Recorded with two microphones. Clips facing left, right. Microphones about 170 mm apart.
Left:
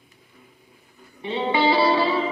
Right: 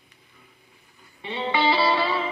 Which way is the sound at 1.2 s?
45° left (ahead or behind).